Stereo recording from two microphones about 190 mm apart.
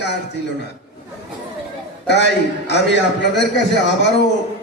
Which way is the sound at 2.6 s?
65° left (ahead or behind).